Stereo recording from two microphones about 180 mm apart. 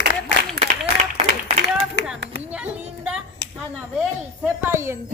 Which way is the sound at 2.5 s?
5° right (ahead or behind).